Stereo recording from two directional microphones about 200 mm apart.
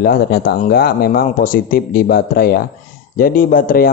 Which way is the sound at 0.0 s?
50° left (ahead or behind).